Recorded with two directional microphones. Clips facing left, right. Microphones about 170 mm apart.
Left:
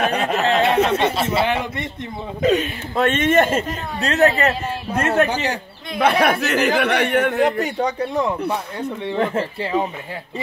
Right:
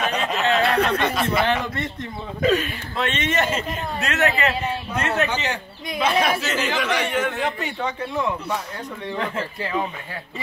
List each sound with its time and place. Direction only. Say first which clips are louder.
0.0 s a sound: left 4 dB; 55° left (ahead or behind)
0.6 s speech: left 4 dB; 20° left (ahead or behind)
1.4 s a man's voice: left 1 dB; 10° left (ahead or behind)
3.0 s speech: left 7 dB; 50° left (ahead or behind)
4.0 s a man's voice: left 6 dB; 35° left (ahead or behind)
5.9 s speech: left 4 dB; 60° left (ahead or behind)
7.5 s a man's voice: left 6 dB; 40° left (ahead or behind)
8.5 s speech: left 4 dB; 30° left (ahead or behind)